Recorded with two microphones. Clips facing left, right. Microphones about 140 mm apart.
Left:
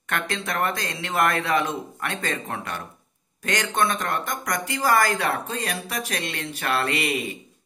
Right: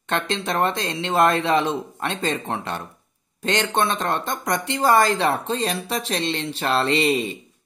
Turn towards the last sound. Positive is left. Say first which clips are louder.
# right 5 dB
turn(degrees=-25)  # may be behind; listen again after turning